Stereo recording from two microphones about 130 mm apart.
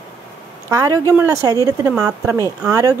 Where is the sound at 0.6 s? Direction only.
25° right (ahead or behind).